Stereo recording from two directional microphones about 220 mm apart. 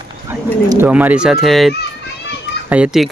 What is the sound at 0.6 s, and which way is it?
Speech, 10° right (ahead or behind).